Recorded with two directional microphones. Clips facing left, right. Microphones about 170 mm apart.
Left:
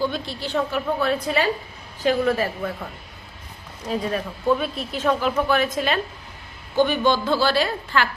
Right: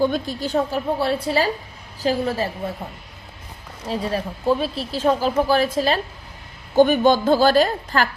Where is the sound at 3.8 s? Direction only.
30° right (ahead or behind).